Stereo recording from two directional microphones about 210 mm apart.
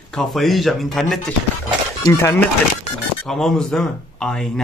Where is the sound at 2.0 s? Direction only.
10° left (ahead or behind).